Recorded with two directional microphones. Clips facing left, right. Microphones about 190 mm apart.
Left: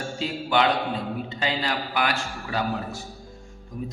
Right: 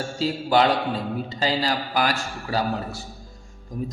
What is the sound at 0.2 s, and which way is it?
A man's voice, 35° right (ahead or behind).